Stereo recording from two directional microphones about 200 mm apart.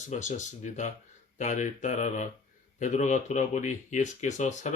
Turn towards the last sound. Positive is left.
turn(degrees=35)  # may be behind; listen again after turning